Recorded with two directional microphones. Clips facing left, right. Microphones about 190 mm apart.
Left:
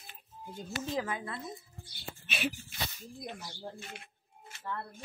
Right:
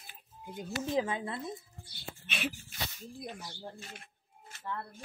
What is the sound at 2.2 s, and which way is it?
Speech, 5° left (ahead or behind).